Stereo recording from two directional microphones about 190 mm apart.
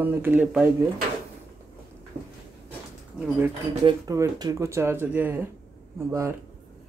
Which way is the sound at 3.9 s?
20° right (ahead or behind).